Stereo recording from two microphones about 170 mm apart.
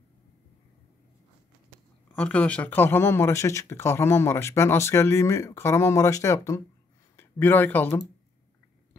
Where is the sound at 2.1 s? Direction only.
5° left (ahead or behind).